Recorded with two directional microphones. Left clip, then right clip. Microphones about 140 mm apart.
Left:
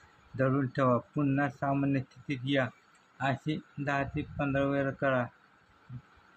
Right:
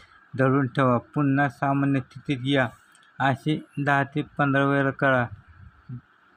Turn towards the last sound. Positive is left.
turn(degrees=-45)  # may be behind; listen again after turning